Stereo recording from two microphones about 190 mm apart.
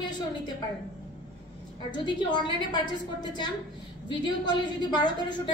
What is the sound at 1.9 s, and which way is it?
A woman's voice, 25° left (ahead or behind).